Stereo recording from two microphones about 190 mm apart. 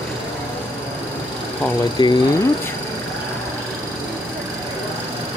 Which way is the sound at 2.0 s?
25° left (ahead or behind).